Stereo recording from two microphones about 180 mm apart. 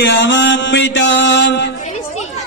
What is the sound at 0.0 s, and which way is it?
Mantra, 80° left.